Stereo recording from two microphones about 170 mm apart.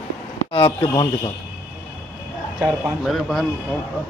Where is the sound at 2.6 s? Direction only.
Centre (ahead or behind).